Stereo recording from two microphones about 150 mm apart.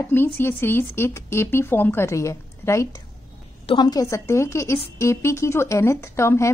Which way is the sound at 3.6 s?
30° left (ahead or behind).